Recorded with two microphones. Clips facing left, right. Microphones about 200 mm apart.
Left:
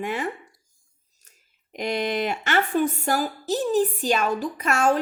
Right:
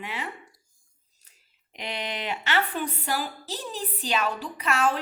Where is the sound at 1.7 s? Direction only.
45° left (ahead or behind).